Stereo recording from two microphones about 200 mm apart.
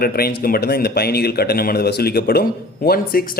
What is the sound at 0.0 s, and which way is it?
A man's voice, 50° left (ahead or behind).